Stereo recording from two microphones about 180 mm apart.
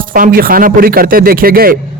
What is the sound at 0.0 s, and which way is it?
Speech, 50° right (ahead or behind).